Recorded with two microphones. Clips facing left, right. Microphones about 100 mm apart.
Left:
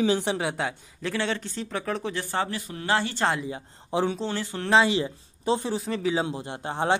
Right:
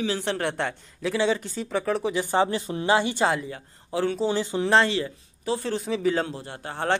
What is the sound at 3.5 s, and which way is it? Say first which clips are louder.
Speech: left 2 dB; 20° left (ahead or behind).